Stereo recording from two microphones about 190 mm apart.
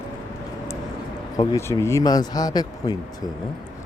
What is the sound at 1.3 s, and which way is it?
Speech, 15° left (ahead or behind).